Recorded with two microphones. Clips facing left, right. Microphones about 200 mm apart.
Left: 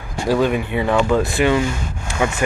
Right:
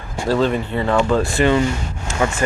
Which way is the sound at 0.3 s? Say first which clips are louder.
Even; 15° left (ahead or behind).